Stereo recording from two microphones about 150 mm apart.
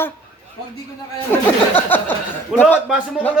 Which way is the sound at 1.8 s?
10° left (ahead or behind).